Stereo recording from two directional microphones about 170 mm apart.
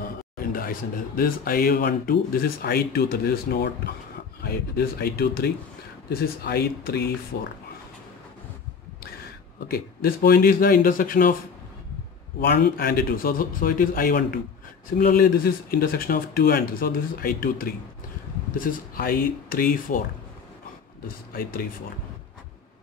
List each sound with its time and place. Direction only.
0.4 s a sound: 55° left (ahead or behind)
1.1 s speech: 60° left (ahead or behind)
9.7 s speech: 60° left (ahead or behind)
12.4 s speech: 60° left (ahead or behind)
21.3 s speech: 60° left (ahead or behind)